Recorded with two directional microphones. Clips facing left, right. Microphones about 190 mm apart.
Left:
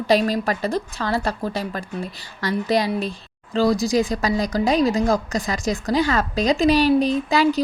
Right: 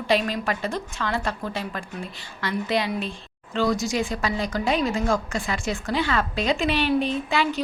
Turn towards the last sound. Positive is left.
turn(degrees=40)  # may be behind; listen again after turning